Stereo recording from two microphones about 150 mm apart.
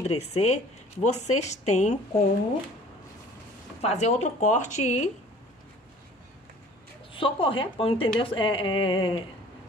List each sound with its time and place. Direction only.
0.0 s speech: 45° left (ahead or behind)
3.8 s speech: 50° left (ahead or behind)
7.2 s a woman's voice: 35° left (ahead or behind)